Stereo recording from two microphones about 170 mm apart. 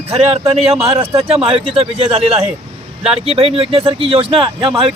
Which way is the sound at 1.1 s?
35° right (ahead or behind).